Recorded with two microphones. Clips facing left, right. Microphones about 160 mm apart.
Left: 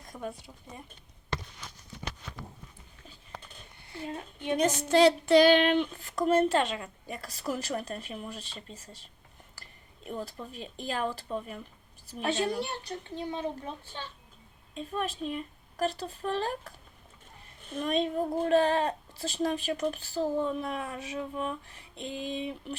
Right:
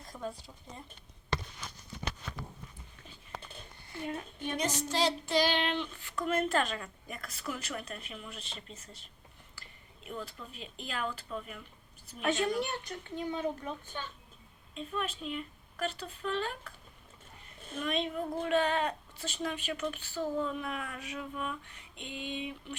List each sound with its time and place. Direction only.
0.1 s a sound: 20° left (ahead or behind)
3.8 s a woman's voice: 25° left (ahead or behind)
4.5 s speech: 55° left (ahead or behind); by 13.4 s 30° left (ahead or behind)
14.8 s speech: 35° left (ahead or behind)
17.7 s speech: 35° left (ahead or behind)